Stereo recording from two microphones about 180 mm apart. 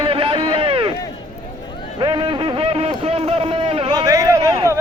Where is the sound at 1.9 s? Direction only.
25° right (ahead or behind).